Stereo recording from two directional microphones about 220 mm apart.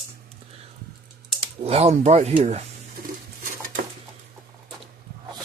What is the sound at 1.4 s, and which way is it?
Speech, 25° right (ahead or behind).